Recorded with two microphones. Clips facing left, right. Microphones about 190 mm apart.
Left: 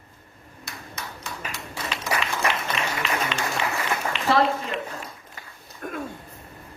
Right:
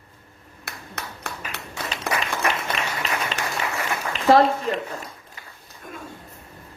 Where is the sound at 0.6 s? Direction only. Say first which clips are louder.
Right 1 dB; 60° right (ahead or behind).